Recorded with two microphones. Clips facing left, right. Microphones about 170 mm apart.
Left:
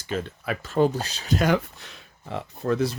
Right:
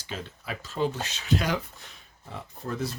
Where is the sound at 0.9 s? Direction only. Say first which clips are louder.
Left 2 dB; 35° left (ahead or behind).